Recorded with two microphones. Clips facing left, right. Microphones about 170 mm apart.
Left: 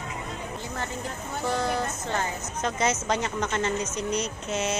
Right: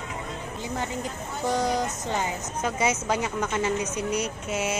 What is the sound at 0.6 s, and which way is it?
Music, 15° right (ahead or behind).